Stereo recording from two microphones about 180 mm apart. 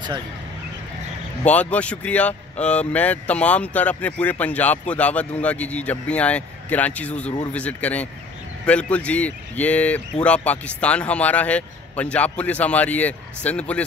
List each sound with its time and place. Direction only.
1.4 s speech: 10° left (ahead or behind)